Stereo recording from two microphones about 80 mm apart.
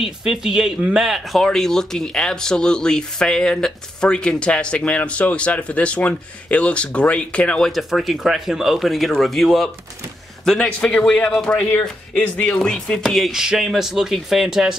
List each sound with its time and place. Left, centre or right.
0.0 s a man's voice: centre
7.7 s a man's voice: centre